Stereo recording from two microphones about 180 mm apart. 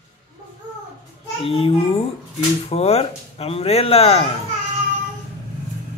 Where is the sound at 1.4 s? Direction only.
30° left (ahead or behind).